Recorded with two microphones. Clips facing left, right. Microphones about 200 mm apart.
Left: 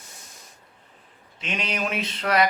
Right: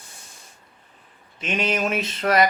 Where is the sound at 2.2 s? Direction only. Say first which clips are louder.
Right 3 dB; 45° right (ahead or behind).